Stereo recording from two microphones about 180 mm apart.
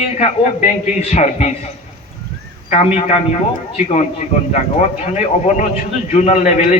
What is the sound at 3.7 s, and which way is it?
A man's voice, 40° left (ahead or behind).